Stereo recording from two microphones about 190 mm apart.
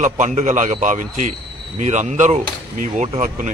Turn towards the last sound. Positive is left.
turn(degrees=-40)  # may be behind; listen again after turning